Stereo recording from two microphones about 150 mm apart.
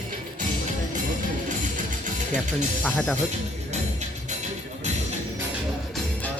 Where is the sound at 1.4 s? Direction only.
55° right (ahead or behind).